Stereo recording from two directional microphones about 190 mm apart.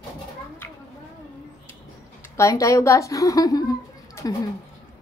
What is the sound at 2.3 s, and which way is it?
A woman's voice, 15° left (ahead or behind).